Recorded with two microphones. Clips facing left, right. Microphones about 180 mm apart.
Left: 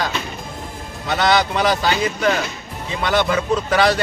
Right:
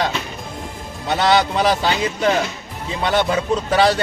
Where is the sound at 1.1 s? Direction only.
30° right (ahead or behind).